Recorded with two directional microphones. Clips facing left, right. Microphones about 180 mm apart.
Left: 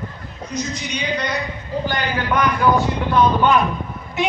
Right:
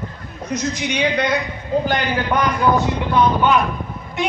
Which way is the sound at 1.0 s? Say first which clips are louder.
Right 6 dB; 55° right (ahead or behind).